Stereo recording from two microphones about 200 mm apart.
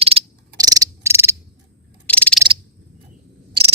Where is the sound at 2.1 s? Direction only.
5° left (ahead or behind).